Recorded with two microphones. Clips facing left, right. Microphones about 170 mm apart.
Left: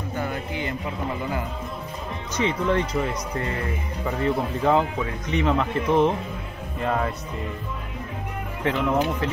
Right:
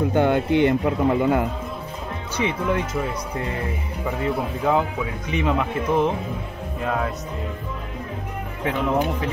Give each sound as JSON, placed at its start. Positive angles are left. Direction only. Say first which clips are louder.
{"t": 0.1, "sound": "a man's voice", "louder": "right 8 dB", "side_deg": -80}
{"t": 2.3, "sound": "speech", "louder": "left 1 dB", "side_deg": -10}
{"t": 8.6, "sound": "speech", "louder": "even", "side_deg": -10}